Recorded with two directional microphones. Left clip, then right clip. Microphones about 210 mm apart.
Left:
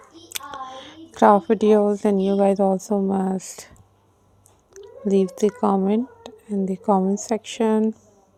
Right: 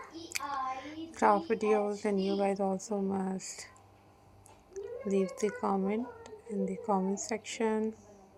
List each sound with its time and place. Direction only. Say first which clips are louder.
0.3 s a woman's voice: left 2 dB; 55° left (ahead or behind)